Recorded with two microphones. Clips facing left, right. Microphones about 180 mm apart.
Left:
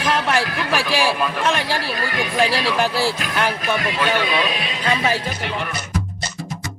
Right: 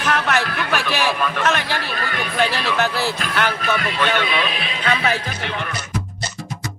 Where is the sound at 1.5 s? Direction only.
30° left (ahead or behind).